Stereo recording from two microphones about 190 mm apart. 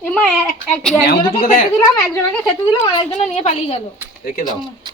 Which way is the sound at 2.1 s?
10° left (ahead or behind).